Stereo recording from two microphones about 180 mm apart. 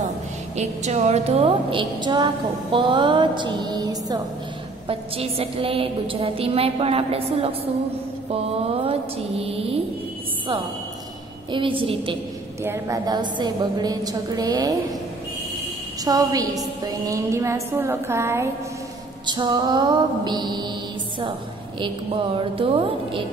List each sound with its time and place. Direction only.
0.6 s a woman's voice: 40° right (ahead or behind); by 4.2 s 20° right (ahead or behind)
4.8 s a woman's voice: 30° right (ahead or behind)
9.4 s a woman's voice: 35° right (ahead or behind)
11.5 s a woman's voice: 30° right (ahead or behind)
12.6 s a woman's voice: 15° right (ahead or behind)
16.0 s a woman's voice: 20° right (ahead or behind)
21.7 s a woman's voice: 30° right (ahead or behind)